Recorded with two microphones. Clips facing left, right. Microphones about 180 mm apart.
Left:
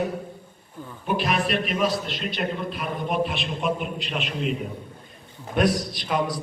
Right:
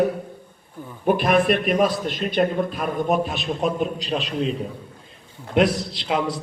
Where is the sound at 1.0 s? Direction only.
50° right (ahead or behind); by 4.3 s 35° right (ahead or behind).